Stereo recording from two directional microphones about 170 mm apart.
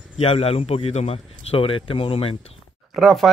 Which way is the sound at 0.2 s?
35° left (ahead or behind).